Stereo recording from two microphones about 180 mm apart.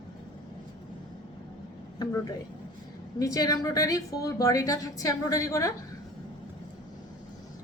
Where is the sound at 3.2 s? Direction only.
20° left (ahead or behind).